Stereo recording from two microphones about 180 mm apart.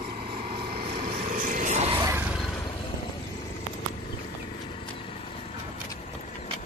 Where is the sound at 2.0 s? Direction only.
15° right (ahead or behind).